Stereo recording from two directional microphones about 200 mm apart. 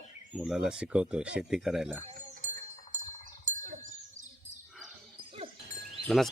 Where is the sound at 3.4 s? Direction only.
40° right (ahead or behind).